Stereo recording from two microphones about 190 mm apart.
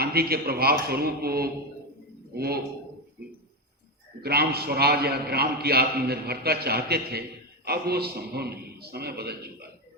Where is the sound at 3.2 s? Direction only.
60° right (ahead or behind).